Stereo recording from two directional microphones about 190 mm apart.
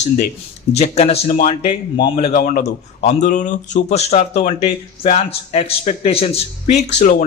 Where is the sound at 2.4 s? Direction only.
40° left (ahead or behind).